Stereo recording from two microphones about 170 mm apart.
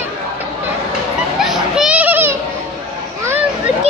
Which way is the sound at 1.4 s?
5° right (ahead or behind).